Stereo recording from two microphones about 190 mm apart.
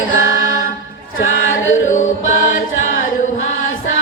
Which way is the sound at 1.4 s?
90° left.